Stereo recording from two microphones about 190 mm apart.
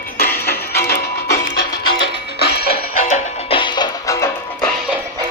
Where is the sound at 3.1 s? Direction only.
25° left (ahead or behind).